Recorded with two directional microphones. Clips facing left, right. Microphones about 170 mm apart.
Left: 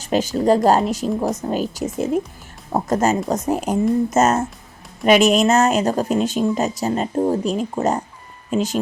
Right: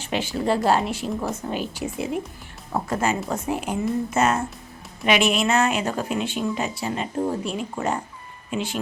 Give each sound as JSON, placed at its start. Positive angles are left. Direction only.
{"t": 0.0, "sound": "a woman's voice", "side_deg": 40}